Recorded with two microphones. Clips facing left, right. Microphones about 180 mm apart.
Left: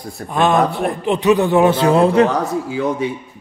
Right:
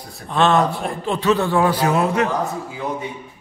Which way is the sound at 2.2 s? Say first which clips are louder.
Left 4 dB; 90° left.